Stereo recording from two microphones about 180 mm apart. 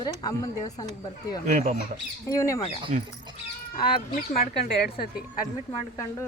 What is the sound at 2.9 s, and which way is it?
Speech, 40° right (ahead or behind).